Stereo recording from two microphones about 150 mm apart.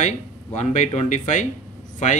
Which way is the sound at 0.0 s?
50° left (ahead or behind).